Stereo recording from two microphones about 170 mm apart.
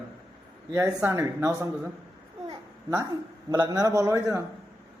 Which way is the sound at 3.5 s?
25° right (ahead or behind).